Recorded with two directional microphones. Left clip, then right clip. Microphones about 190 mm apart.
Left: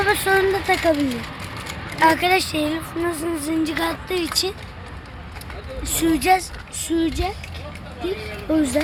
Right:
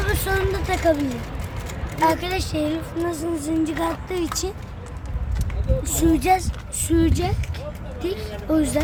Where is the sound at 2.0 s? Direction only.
25° left (ahead or behind).